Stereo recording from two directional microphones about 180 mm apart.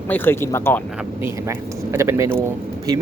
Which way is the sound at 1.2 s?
15° right (ahead or behind).